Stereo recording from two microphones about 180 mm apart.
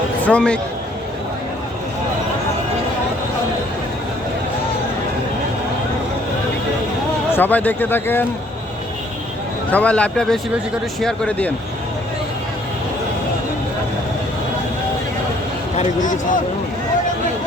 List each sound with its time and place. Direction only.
0.2 s a man's voice: 5° left (ahead or behind)
7.3 s a man's voice: 10° left (ahead or behind)
9.7 s a man's voice: 5° left (ahead or behind)
15.8 s speech: 45° left (ahead or behind)